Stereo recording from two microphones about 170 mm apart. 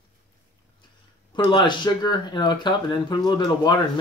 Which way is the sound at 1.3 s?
30° left (ahead or behind).